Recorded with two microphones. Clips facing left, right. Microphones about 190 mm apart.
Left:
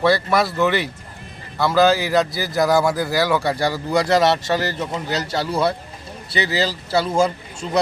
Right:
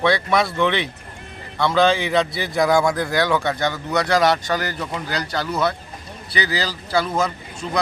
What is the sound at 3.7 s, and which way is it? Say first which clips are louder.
A man's voice: left 3 dB; 25° left (ahead or behind).